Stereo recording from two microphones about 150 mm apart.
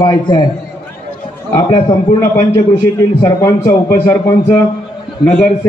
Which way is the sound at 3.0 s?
20° left (ahead or behind).